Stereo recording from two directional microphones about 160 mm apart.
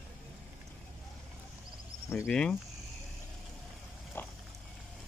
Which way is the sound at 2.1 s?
10° left (ahead or behind).